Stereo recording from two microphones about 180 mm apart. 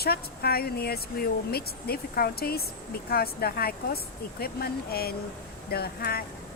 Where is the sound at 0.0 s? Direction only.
60° left (ahead or behind).